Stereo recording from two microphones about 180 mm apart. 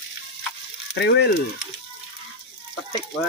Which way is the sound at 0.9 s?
70° left (ahead or behind).